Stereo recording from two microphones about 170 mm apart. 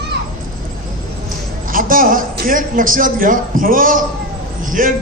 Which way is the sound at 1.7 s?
55° right (ahead or behind).